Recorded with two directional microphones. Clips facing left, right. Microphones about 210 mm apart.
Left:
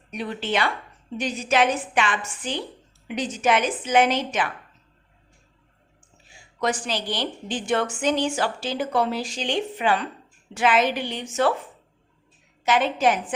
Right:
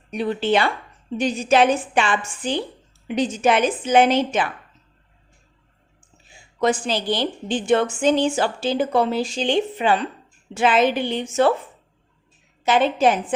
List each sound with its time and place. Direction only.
0.1 s a woman's voice: 30° right (ahead or behind)
6.6 s a woman's voice: 25° right (ahead or behind)
12.6 s a woman's voice: 30° right (ahead or behind)